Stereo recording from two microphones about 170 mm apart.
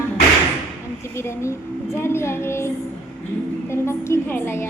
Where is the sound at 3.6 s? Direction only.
15° left (ahead or behind).